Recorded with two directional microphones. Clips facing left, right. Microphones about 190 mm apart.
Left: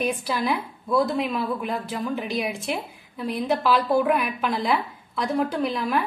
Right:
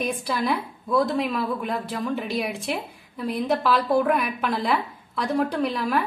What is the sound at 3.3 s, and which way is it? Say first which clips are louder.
A woman's voice: even; centre (ahead or behind).